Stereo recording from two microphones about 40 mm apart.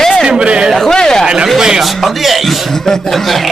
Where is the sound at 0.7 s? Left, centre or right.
Centre.